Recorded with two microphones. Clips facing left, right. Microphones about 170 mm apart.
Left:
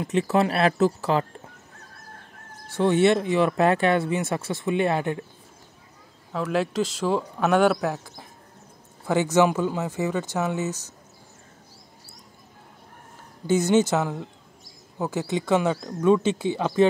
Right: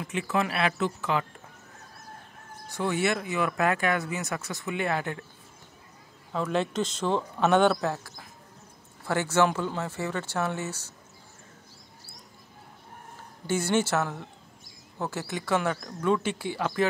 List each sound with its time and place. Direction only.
0.0 s speech: 35° left (ahead or behind)
2.7 s speech: 25° left (ahead or behind)
6.3 s speech: 5° left (ahead or behind)
13.5 s speech: 15° left (ahead or behind)